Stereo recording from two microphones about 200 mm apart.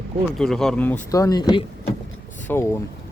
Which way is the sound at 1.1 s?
15° left (ahead or behind).